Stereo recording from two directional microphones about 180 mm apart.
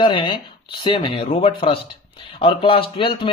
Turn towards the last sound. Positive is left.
turn(degrees=30)  # may be behind; listen again after turning